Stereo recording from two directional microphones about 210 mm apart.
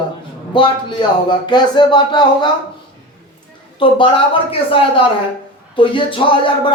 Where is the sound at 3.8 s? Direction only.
25° left (ahead or behind).